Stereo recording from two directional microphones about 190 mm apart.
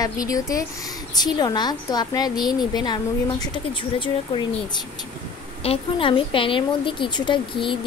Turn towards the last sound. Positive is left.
turn(degrees=25)  # may be behind; listen again after turning